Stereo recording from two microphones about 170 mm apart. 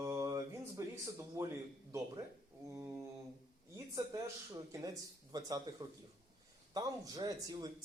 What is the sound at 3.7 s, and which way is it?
Speech, 20° right (ahead or behind).